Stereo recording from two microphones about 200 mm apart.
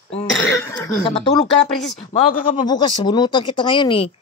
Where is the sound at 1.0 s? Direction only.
25° left (ahead or behind).